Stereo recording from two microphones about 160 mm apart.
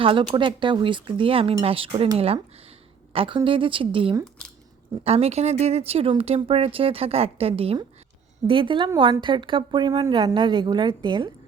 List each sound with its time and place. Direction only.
0.0 s a woman's voice: 35° right (ahead or behind)